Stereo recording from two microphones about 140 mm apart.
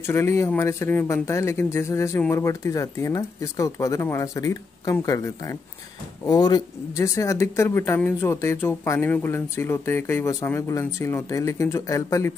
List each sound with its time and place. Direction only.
0.0 s speech: 20° left (ahead or behind)